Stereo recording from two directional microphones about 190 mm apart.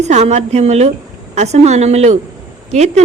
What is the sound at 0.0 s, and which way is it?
A woman's voice, 35° right (ahead or behind).